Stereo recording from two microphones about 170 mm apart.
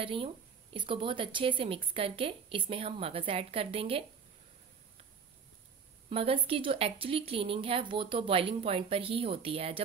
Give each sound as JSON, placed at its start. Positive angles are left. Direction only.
{"t": 0.0, "sound": "a woman's voice", "side_deg": -30}
{"t": 6.0, "sound": "a woman's voice", "side_deg": -35}